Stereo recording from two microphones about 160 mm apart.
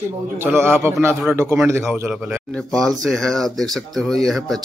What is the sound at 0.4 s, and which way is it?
Speech, 15° right (ahead or behind).